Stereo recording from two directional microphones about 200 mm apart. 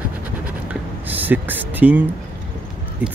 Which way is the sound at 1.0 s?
10° right (ahead or behind).